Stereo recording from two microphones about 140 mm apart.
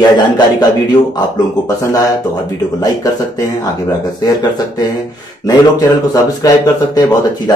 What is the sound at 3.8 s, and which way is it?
Speech, 30° left (ahead or behind).